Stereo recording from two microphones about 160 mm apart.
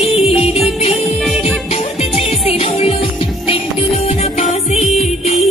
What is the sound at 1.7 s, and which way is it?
Music, 40° left (ahead or behind).